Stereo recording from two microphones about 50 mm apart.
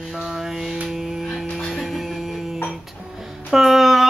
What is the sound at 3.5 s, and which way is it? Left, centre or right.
Speech, centre.